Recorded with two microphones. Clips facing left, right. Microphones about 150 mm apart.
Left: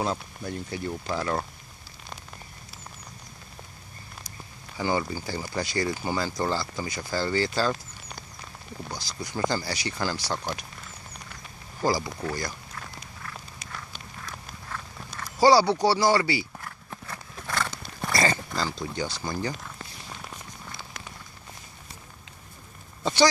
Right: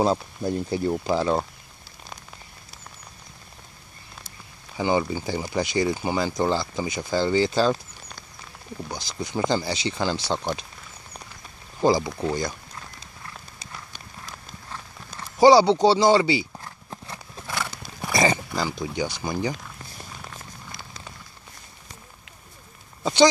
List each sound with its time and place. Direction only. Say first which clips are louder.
0.0 s speech: right 7 dB; 35° right (ahead or behind)
4.7 s speech: right 4 dB; 20° right (ahead or behind)
8.9 s speech: right 5 dB; 20° right (ahead or behind)
11.8 s speech: right 6 dB; 20° right (ahead or behind)
13.0 s clip-clop: left 1 dB; 30° right (ahead or behind)
14.7 s a sound: left 1 dB; 20° right (ahead or behind)